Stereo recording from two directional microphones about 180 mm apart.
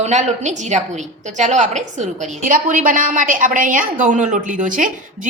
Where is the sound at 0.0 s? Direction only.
40° right (ahead or behind).